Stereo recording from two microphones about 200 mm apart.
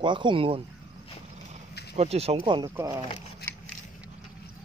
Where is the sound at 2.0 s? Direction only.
30° right (ahead or behind).